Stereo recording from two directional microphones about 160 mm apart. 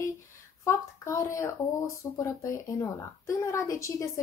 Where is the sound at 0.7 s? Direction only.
15° left (ahead or behind).